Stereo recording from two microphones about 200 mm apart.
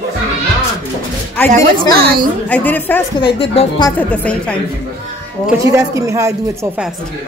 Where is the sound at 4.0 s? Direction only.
5° left (ahead or behind).